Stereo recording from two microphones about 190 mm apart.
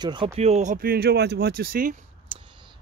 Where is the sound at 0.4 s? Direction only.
35° right (ahead or behind).